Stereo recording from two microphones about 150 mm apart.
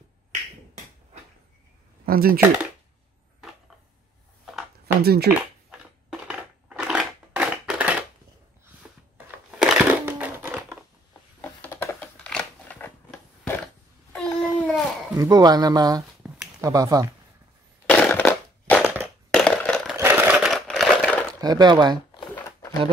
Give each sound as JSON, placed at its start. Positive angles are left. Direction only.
{"t": 2.0, "sound": "speech", "side_deg": -80}
{"t": 5.0, "sound": "speech", "side_deg": -90}
{"t": 6.2, "sound": "crushing", "side_deg": -5}
{"t": 9.5, "sound": "crushing", "side_deg": -5}
{"t": 11.6, "sound": "a sound", "side_deg": 15}
{"t": 14.1, "sound": "a sound", "side_deg": 10}
{"t": 15.1, "sound": "speech", "side_deg": -25}
{"t": 16.2, "sound": "a sound", "side_deg": -5}
{"t": 16.6, "sound": "speech", "side_deg": -20}
{"t": 17.8, "sound": "crushing", "side_deg": 10}
{"t": 20.0, "sound": "crumpling", "side_deg": -15}
{"t": 21.4, "sound": "speech", "side_deg": -30}